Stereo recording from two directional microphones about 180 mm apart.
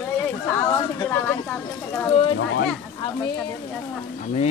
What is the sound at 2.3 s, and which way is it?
Speech, 75° left (ahead or behind).